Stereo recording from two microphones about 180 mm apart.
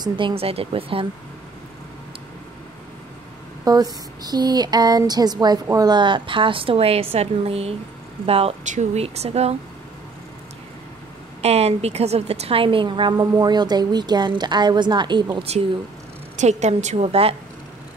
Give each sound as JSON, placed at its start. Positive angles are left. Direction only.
{"t": 0.0, "sound": "speech", "side_deg": -30}
{"t": 3.6, "sound": "a woman's voice", "side_deg": -20}
{"t": 11.4, "sound": "a woman's voice", "side_deg": -35}